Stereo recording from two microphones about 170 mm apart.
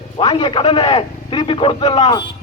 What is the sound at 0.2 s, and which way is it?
A man's voice, 30° left (ahead or behind).